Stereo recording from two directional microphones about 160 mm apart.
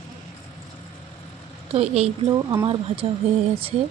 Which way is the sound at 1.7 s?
40° right (ahead or behind).